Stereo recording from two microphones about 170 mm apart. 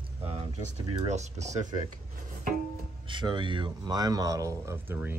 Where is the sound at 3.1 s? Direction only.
25° right (ahead or behind).